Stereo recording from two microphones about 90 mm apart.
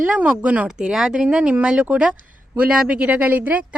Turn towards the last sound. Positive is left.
turn(degrees=-15)  # may be behind; listen again after turning